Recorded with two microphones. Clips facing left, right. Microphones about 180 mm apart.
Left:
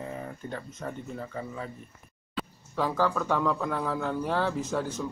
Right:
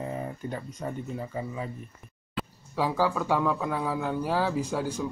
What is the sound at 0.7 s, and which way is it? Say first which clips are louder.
Speech: right 2 dB; 10° right (ahead or behind).